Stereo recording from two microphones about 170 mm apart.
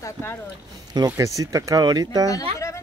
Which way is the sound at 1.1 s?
20° right (ahead or behind).